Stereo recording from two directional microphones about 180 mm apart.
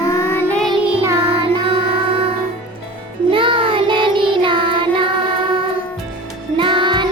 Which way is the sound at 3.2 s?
30° right (ahead or behind).